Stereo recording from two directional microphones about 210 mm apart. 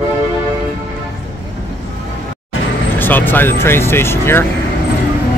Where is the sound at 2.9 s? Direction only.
10° left (ahead or behind).